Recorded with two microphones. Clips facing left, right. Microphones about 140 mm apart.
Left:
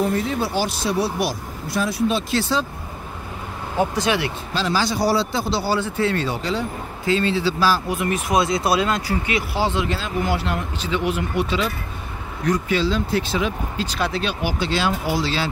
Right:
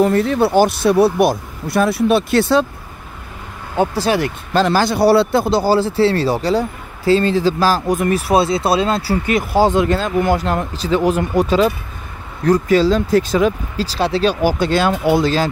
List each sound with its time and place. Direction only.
0.0 s speech: 65° right (ahead or behind)
3.7 s speech: 30° right (ahead or behind); by 15.4 s 50° right (ahead or behind)